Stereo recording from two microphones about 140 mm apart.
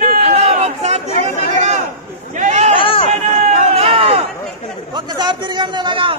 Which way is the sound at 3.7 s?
45° right (ahead or behind).